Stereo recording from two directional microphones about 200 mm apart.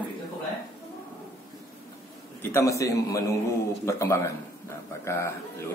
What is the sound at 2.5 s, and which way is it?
Speech, 15° left (ahead or behind).